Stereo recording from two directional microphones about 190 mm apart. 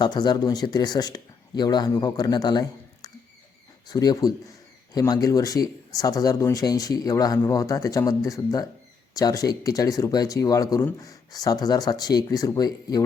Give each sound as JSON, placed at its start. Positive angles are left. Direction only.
{"t": 0.0, "sound": "speech", "side_deg": 20}